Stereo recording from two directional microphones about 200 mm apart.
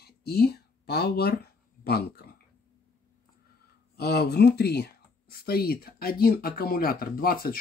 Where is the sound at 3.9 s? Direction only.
55° left (ahead or behind).